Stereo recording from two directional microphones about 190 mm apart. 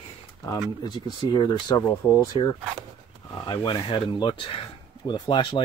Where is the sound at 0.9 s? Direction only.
25° left (ahead or behind).